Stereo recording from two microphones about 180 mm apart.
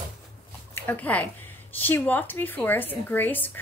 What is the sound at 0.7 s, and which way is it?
Speech, 10° left (ahead or behind).